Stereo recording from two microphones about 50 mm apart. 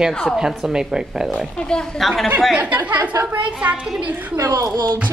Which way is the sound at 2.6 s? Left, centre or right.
Right.